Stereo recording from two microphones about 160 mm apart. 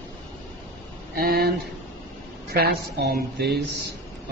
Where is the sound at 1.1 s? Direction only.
70° right (ahead or behind).